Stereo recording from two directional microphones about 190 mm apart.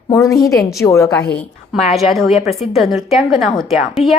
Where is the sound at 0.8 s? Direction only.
15° left (ahead or behind).